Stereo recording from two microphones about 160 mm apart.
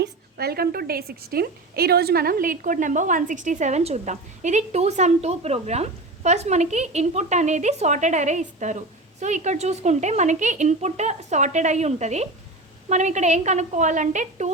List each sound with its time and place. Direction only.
0.0 s a woman's voice: 80° right; by 14.5 s 50° right (ahead or behind)